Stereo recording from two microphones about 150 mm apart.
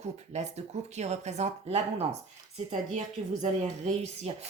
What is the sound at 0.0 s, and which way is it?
A woman's voice, 50° right (ahead or behind).